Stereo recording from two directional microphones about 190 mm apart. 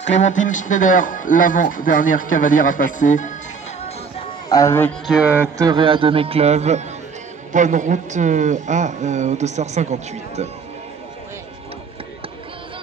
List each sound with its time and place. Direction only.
0.0 s speech: 40° left (ahead or behind)
4.5 s speech: 15° left (ahead or behind)
5.0 s speech: 5° right (ahead or behind); by 10.5 s 35° right (ahead or behind)